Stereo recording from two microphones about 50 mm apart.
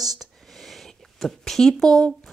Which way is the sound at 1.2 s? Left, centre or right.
Centre.